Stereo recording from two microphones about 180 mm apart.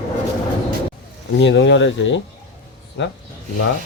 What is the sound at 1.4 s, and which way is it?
Speech, 80° left.